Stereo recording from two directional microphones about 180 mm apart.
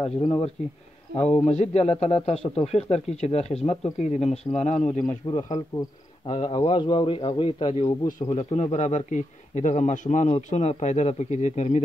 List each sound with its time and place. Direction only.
0.2 s speech: 30° left (ahead or behind)
1.1 s a man's voice: 10° left (ahead or behind)
1.5 s a man's voice: 35° left (ahead or behind)
5.2 s a man's voice: 25° left (ahead or behind)